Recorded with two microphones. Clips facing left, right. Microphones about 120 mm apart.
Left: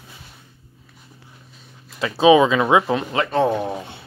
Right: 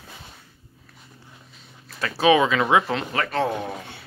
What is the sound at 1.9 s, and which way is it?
Speech, 20° left (ahead or behind).